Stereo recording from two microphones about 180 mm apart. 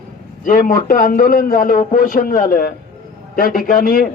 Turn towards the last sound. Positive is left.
turn(degrees=50)  # may be behind; listen again after turning